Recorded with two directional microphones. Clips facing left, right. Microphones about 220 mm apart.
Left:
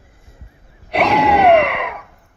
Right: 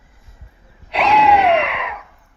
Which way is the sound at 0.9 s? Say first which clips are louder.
Even; 60° left (ahead or behind).